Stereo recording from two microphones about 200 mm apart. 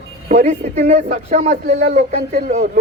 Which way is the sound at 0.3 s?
40° right (ahead or behind).